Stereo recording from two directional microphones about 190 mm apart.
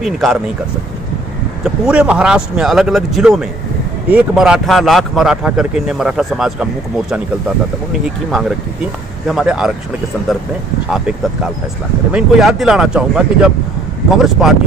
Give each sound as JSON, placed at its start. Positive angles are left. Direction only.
{"t": 0.0, "sound": "speech", "side_deg": 0}
{"t": 1.6, "sound": "speech", "side_deg": -5}
{"t": 8.3, "sound": "speech", "side_deg": 0}
{"t": 12.1, "sound": "speech", "side_deg": -5}